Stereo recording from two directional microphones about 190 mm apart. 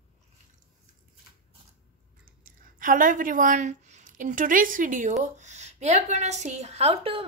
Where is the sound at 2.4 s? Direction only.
45° right (ahead or behind).